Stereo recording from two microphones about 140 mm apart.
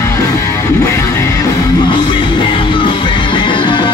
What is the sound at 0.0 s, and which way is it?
Music, 20° left (ahead or behind).